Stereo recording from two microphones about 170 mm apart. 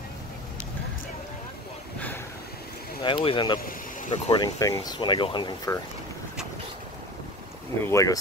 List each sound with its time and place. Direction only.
3.0 s speech: 30° left (ahead or behind)
3.6 s speech: 50° left (ahead or behind)
4.3 s speech: 20° left (ahead or behind)
7.8 s speech: 20° left (ahead or behind)